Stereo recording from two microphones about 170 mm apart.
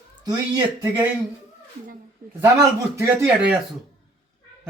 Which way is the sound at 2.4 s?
15° right (ahead or behind).